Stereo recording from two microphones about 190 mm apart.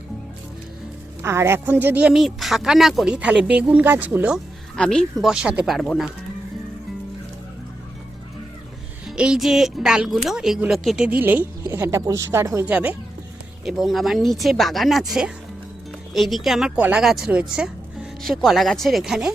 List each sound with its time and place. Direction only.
1.2 s speech: 15° right (ahead or behind)
4.8 s speech: 5° left (ahead or behind)
9.0 s speech: 5° right (ahead or behind)